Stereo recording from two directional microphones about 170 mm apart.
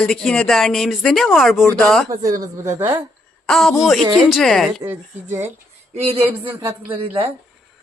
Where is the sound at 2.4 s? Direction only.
20° right (ahead or behind).